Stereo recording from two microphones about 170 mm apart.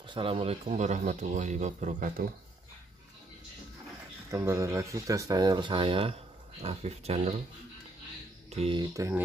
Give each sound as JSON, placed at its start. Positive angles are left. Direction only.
{"t": 0.0, "sound": "speech", "side_deg": -30}
{"t": 4.3, "sound": "speech", "side_deg": -15}
{"t": 8.5, "sound": "speech", "side_deg": -35}
{"t": 8.9, "sound": "speech", "side_deg": -15}